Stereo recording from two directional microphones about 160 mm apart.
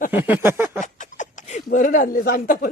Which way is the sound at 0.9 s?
50° left (ahead or behind).